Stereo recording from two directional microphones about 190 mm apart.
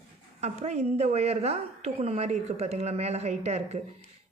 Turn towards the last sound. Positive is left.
turn(degrees=-35)  # may be behind; listen again after turning